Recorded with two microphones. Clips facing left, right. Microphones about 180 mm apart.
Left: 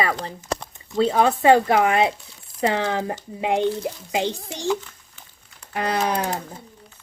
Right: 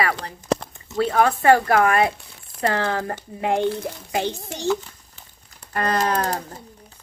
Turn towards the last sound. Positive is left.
turn(degrees=10)  # may be behind; listen again after turning